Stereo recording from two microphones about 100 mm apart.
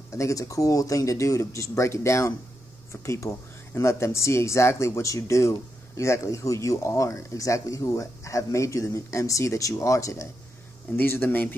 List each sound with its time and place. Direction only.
0.1 s speech: 35° left (ahead or behind)
11.0 s speech: 20° left (ahead or behind)